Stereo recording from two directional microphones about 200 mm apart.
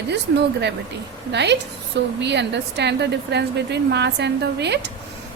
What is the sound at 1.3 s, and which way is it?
A woman's voice, 60° right (ahead or behind).